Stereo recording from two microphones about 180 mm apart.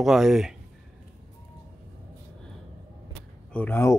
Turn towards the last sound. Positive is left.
turn(degrees=10)  # may be behind; listen again after turning